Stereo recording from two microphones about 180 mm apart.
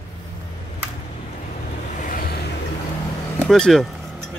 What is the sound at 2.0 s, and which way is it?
Vehicle, 50° left (ahead or behind).